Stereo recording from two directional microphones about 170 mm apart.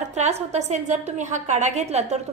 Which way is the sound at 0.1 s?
40° right (ahead or behind).